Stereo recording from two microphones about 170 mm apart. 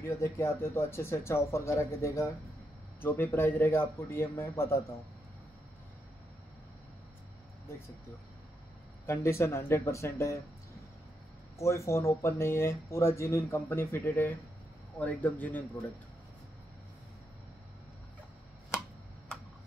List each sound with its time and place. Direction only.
0.0 s speech: 15° left (ahead or behind)
9.0 s speech: 15° left (ahead or behind)
11.5 s speech: 15° left (ahead or behind)